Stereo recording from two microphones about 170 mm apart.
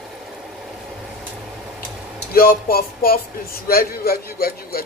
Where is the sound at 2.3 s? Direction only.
60° left (ahead or behind).